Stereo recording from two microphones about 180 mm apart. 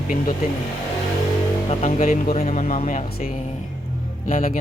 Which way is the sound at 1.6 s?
35° left (ahead or behind).